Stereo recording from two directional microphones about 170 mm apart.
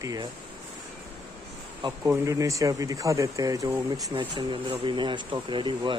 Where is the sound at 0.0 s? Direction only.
20° right (ahead or behind).